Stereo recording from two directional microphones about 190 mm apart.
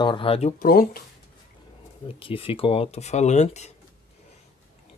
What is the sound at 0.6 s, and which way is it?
Speech, 50° left (ahead or behind).